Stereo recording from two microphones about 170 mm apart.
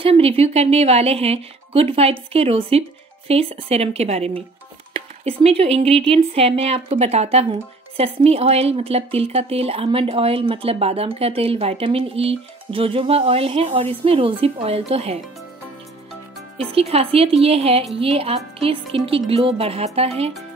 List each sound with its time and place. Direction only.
0.0 s speech: 35° right (ahead or behind)
16.5 s speech: 35° right (ahead or behind)